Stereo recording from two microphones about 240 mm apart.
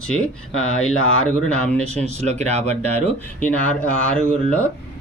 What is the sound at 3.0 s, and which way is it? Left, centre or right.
Speech, centre.